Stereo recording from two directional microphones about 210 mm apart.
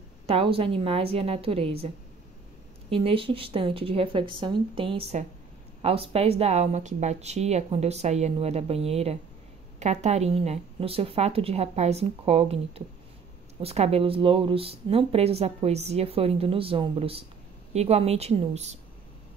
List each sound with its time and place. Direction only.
0.3 s a woman's voice: 25° right (ahead or behind)
2.9 s a woman's voice: 25° right (ahead or behind)